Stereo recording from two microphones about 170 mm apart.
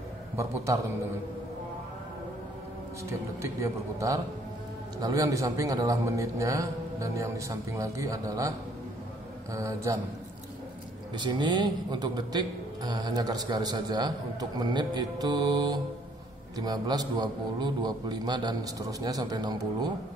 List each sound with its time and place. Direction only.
3.6 s a man's voice: 20° right (ahead or behind)
11.1 s a man's voice: 25° right (ahead or behind)